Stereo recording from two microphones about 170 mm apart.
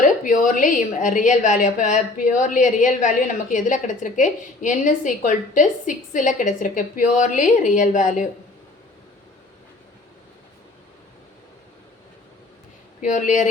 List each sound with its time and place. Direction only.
0.0 s a woman's voice: 50° left (ahead or behind)
13.0 s a woman's voice: 50° left (ahead or behind)